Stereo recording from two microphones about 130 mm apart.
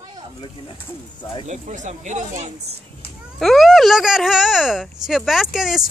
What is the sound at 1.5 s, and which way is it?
Speech, 65° right (ahead or behind).